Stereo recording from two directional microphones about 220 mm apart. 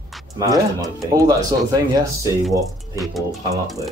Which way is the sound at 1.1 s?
15° right (ahead or behind).